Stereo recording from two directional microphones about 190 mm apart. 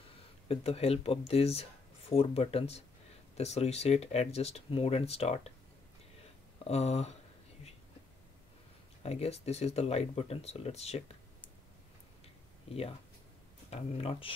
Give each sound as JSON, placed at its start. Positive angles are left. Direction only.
{"t": 0.5, "sound": "speech", "side_deg": 30}
{"t": 6.7, "sound": "speech", "side_deg": 35}
{"t": 9.0, "sound": "speech", "side_deg": 35}
{"t": 13.7, "sound": "speech", "side_deg": 30}